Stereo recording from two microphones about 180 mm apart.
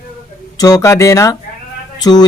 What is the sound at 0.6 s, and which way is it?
Speech, 20° left (ahead or behind).